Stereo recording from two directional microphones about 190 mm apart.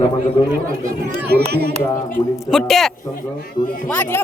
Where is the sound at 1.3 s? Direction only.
60° right (ahead or behind).